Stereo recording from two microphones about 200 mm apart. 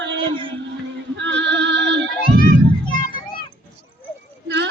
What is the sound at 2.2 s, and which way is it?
Music, 45° left (ahead or behind).